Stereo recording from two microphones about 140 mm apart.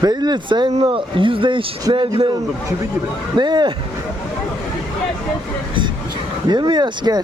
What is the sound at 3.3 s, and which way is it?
Speech, 30° right (ahead or behind).